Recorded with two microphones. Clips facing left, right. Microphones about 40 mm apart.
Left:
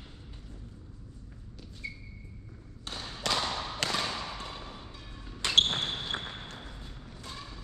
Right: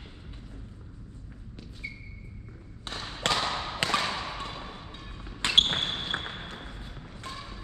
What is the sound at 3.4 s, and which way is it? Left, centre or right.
Thump, right.